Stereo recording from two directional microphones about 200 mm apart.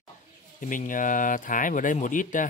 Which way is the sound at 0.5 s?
40° left (ahead or behind).